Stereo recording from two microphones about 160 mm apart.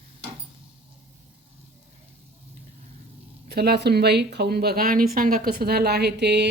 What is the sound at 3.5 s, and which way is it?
Speech, 80° right.